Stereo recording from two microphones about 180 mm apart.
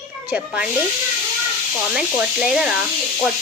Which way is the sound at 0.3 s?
10° right (ahead or behind).